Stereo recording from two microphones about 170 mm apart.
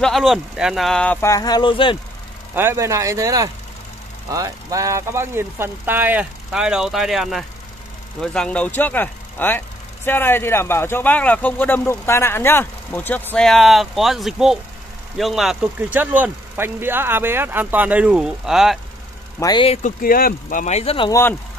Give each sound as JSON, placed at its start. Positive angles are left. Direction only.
{"t": 0.0, "sound": "speech", "side_deg": 0}
{"t": 2.5, "sound": "speech", "side_deg": -15}
{"t": 19.4, "sound": "speech", "side_deg": 25}
{"t": 19.7, "sound": "speech", "side_deg": 50}
{"t": 21.1, "sound": "speech", "side_deg": 15}